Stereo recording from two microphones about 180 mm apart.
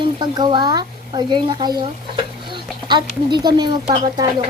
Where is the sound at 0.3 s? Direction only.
25° right (ahead or behind).